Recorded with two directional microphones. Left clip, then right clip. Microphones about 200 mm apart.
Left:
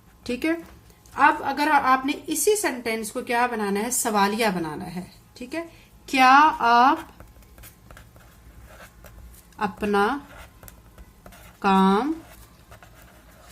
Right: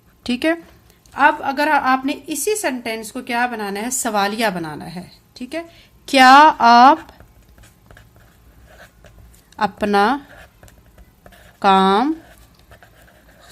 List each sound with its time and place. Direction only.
0.2 s speech: 55° right (ahead or behind)
1.1 s a woman's voice: 40° right (ahead or behind)
6.1 s a woman's voice: 55° right (ahead or behind)
9.6 s a woman's voice: 55° right (ahead or behind)
11.6 s a woman's voice: 55° right (ahead or behind)